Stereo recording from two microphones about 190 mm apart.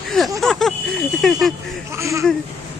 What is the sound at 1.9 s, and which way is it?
Speech, 15° right (ahead or behind).